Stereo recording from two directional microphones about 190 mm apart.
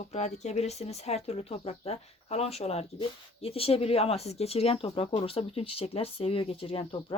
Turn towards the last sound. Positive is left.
turn(degrees=30)  # may be behind; listen again after turning